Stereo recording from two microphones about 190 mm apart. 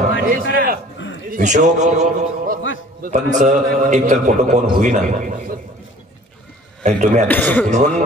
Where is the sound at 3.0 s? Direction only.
40° right (ahead or behind).